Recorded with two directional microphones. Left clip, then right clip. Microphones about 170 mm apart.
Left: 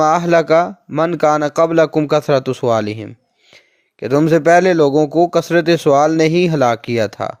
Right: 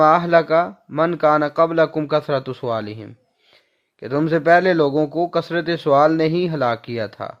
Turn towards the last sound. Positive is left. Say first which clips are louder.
# left 8 dB
turn(degrees=35)  # may be behind; listen again after turning